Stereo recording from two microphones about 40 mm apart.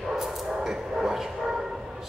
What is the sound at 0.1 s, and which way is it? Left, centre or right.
Bow-wow, centre.